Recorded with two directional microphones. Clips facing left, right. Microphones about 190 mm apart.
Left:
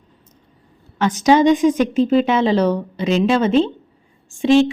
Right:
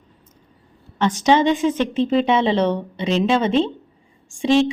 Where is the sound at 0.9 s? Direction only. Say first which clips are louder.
Left 2 dB; 10° left (ahead or behind).